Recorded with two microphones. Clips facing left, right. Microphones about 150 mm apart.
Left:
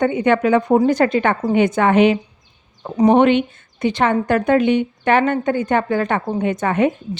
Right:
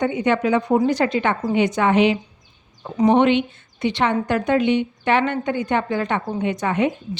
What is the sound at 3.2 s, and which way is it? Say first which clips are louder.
A woman's voice: left 3 dB; 50° left (ahead or behind).